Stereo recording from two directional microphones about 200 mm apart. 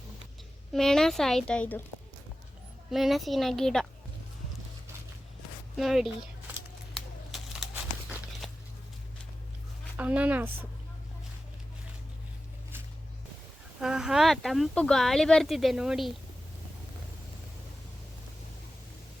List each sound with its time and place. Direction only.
0.7 s speech: centre (ahead or behind)
2.9 s speech: centre (ahead or behind)
5.7 s speech: centre (ahead or behind)
6.9 s a sound: centre (ahead or behind)
10.0 s speech: 5° right (ahead or behind)
13.8 s speech: centre (ahead or behind)